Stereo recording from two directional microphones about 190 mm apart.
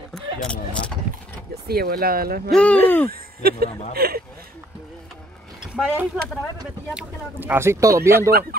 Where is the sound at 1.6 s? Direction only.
55° right (ahead or behind).